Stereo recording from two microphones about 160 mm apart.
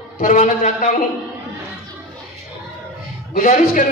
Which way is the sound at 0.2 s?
55° left (ahead or behind).